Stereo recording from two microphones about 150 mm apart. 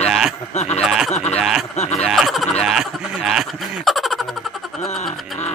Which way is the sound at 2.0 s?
Centre (ahead or behind).